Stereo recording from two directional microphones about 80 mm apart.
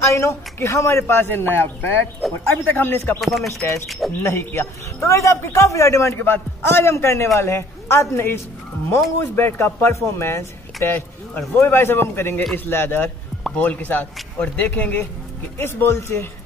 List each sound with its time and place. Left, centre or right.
0.0 s a man's voice: left
2.2 s bird: centre
2.6 s a man's voice: left
3.2 s speech: centre
4.2 s a man's voice: left